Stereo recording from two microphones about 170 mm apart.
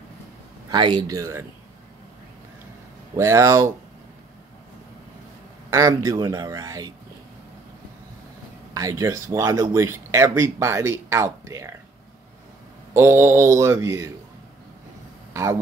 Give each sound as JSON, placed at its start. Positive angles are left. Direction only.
{"t": 0.7, "sound": "speech", "side_deg": -25}
{"t": 3.2, "sound": "speech", "side_deg": -15}
{"t": 5.7, "sound": "speech", "side_deg": -15}
{"t": 8.7, "sound": "speech", "side_deg": -20}
{"t": 12.9, "sound": "speech", "side_deg": -15}
{"t": 15.3, "sound": "speech", "side_deg": -20}